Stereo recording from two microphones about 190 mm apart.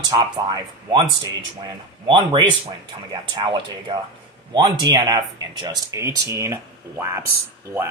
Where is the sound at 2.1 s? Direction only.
25° right (ahead or behind).